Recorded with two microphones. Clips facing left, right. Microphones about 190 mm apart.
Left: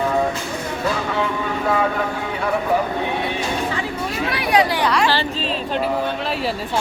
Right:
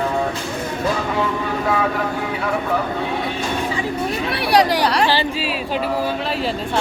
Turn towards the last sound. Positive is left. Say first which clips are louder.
# right 2 dB
turn(degrees=-35)  # may be behind; listen again after turning